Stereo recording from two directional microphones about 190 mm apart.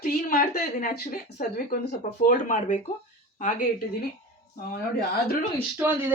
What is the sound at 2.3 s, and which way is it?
Speech, 40° left (ahead or behind).